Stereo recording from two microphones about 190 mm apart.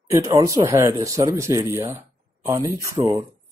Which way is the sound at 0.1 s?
20° right (ahead or behind).